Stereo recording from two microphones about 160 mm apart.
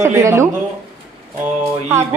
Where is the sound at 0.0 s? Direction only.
20° right (ahead or behind).